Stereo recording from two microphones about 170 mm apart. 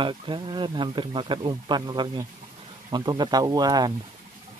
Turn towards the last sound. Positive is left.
turn(degrees=-25)  # may be behind; listen again after turning